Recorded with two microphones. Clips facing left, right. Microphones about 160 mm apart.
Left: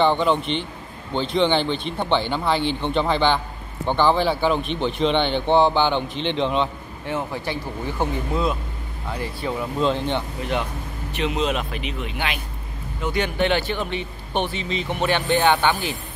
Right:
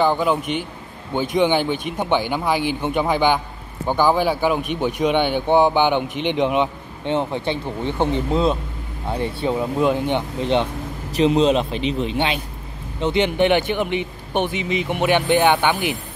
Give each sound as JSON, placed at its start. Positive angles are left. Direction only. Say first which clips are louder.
{"t": 0.0, "sound": "a man's voice", "louder": "even", "side_deg": -5}
{"t": 9.8, "sound": "a man's voice", "louder": "right 1 dB", "side_deg": -15}
{"t": 10.4, "sound": "a man's voice", "louder": "right 6 dB", "side_deg": -30}